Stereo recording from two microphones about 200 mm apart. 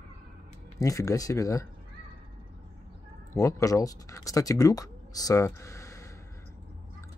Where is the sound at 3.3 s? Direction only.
15° left (ahead or behind).